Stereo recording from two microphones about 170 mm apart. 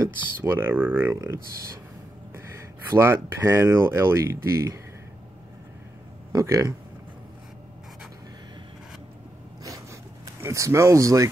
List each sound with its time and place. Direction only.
0.0 s speech: 15° right (ahead or behind)
2.9 s speech: 15° right (ahead or behind)
6.3 s speech: 20° right (ahead or behind)
10.4 s speech: 15° right (ahead or behind)